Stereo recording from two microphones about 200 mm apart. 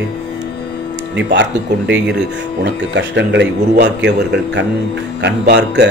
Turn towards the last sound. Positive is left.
turn(degrees=-60)  # may be behind; listen again after turning